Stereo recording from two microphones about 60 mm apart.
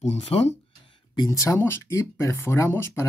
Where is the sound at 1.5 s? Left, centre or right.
Left.